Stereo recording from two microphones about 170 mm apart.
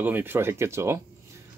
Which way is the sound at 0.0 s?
10° right (ahead or behind).